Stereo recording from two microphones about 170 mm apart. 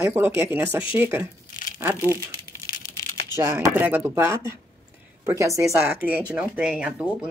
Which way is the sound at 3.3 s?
15° right (ahead or behind).